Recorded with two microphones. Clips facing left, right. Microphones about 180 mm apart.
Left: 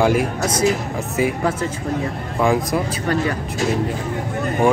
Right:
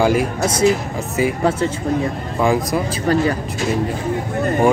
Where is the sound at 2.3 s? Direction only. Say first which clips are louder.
Even; centre (ahead or behind).